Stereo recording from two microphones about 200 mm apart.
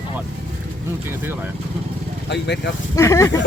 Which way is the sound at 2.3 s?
60° left (ahead or behind).